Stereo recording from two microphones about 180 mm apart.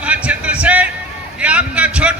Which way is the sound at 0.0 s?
5° right (ahead or behind).